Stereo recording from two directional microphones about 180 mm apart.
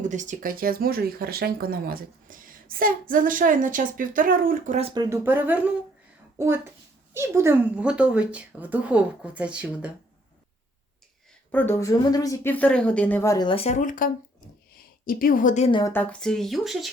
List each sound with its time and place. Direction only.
0.0 s speech: 45° right (ahead or behind)
4.8 s speech: 30° right (ahead or behind)
5.0 s speech: 15° right (ahead or behind)
11.5 s a woman's voice: 15° left (ahead or behind); by 15.7 s 40° left (ahead or behind)
15.9 s speech: 5° left (ahead or behind)